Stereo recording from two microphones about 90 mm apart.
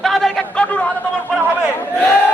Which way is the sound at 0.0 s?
5° left (ahead or behind).